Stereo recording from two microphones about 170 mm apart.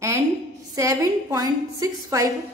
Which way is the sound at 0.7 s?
20° right (ahead or behind).